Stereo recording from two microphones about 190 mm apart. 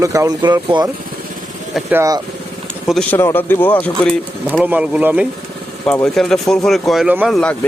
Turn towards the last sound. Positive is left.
turn(degrees=-5)  # may be behind; listen again after turning